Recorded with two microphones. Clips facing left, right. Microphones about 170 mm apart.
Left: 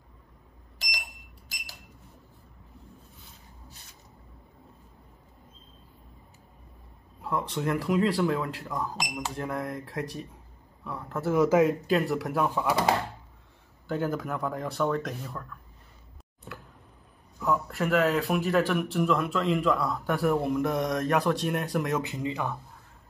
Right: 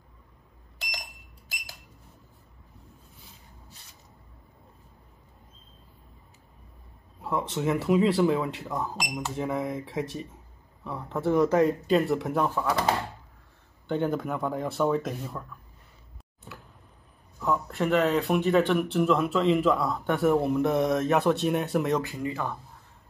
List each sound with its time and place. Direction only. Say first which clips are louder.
7.2 s speech: right 1 dB; centre (ahead or behind)
12.4 s speech: left 1 dB; 15° left (ahead or behind)
13.8 s speech: right 2 dB; centre (ahead or behind)
17.4 s speech: right 1 dB; centre (ahead or behind)
22.0 s speech: even; 20° left (ahead or behind)